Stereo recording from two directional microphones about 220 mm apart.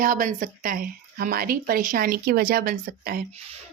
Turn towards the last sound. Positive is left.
turn(degrees=-40)  # may be behind; listen again after turning